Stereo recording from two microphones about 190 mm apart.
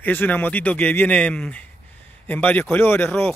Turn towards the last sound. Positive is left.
turn(degrees=10)  # may be behind; listen again after turning